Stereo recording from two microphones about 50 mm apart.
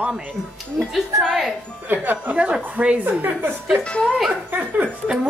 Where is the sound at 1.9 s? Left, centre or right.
Right.